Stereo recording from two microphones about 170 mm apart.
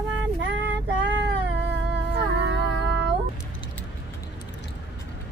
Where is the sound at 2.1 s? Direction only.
85° right.